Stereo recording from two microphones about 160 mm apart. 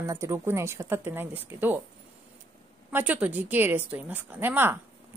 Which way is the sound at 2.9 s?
10° right (ahead or behind).